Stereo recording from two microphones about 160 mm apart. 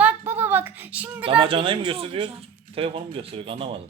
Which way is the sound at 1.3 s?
35° right (ahead or behind).